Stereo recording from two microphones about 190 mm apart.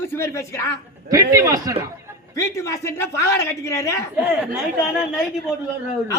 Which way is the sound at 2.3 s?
15° left (ahead or behind).